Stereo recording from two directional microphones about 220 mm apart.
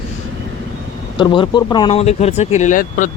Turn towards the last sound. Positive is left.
turn(degrees=35)  # may be behind; listen again after turning